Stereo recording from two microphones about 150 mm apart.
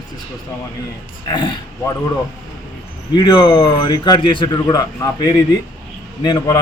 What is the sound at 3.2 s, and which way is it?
A man's voice, 30° left (ahead or behind).